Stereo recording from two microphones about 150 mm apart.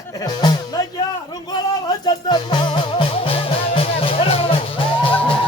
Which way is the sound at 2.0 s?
30° left (ahead or behind).